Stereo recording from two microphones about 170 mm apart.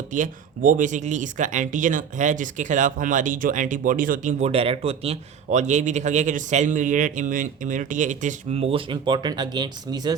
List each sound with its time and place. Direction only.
0.1 s speech: 50° right (ahead or behind); by 10.2 s 25° right (ahead or behind)